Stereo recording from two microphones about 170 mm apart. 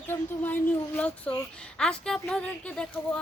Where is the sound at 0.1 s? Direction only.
10° left (ahead or behind).